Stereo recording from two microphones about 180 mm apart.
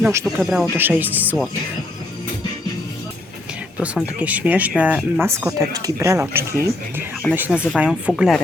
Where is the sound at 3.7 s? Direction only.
5° right (ahead or behind).